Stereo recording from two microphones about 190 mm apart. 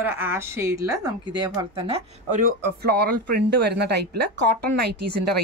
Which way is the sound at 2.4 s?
50° right (ahead or behind).